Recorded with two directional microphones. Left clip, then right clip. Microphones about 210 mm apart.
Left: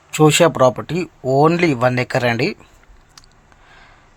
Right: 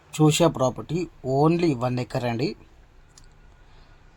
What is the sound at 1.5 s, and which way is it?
Speech, 10° left (ahead or behind).